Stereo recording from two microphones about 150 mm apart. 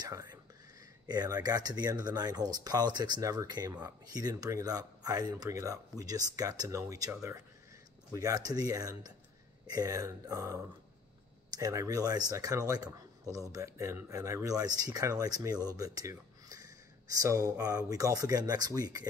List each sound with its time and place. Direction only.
0.0 s speech: 25° right (ahead or behind)
8.1 s speech: 20° right (ahead or behind)